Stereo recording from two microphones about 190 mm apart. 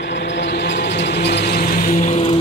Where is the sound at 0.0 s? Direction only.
65° left (ahead or behind); by 2.2 s 40° left (ahead or behind).